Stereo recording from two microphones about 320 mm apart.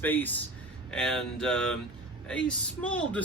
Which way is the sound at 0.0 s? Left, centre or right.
Centre.